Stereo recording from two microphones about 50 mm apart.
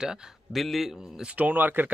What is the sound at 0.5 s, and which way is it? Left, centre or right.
Speech, centre.